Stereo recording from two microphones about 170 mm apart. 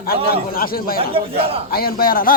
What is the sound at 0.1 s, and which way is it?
Speech, 60° left (ahead or behind).